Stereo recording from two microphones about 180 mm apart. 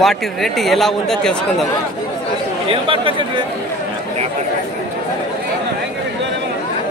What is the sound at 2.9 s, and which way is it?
Speech, 30° right (ahead or behind).